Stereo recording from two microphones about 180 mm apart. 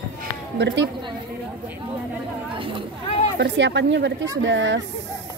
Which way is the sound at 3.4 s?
80° right.